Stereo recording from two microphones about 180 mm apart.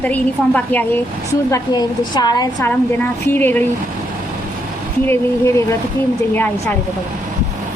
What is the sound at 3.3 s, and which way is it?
Speech, 10° left (ahead or behind).